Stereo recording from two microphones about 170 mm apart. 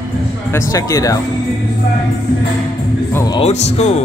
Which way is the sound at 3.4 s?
40° left (ahead or behind).